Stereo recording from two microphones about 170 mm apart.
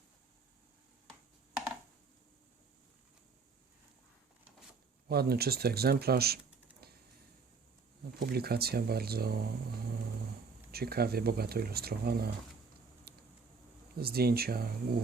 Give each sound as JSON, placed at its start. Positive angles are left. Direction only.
{"t": 5.0, "sound": "speech", "side_deg": -65}
{"t": 8.2, "sound": "speech", "side_deg": -65}
{"t": 10.7, "sound": "speech", "side_deg": -65}
{"t": 13.1, "sound": "a sound", "side_deg": -65}
{"t": 13.9, "sound": "speech", "side_deg": -65}